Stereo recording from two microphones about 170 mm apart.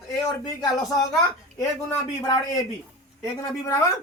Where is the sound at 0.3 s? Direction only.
20° left (ahead or behind).